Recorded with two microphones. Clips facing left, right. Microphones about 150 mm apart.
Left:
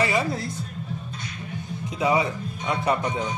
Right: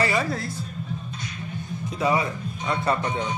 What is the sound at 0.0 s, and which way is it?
Music, 20° left (ahead or behind).